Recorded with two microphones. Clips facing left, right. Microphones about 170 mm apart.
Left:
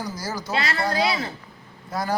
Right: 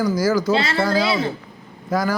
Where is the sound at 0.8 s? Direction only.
90° right.